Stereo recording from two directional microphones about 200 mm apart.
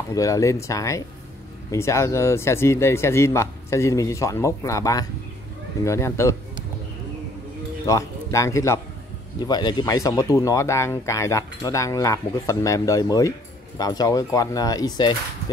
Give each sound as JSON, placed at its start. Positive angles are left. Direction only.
{"t": 0.1, "sound": "speech", "side_deg": 15}
{"t": 7.8, "sound": "speech", "side_deg": 15}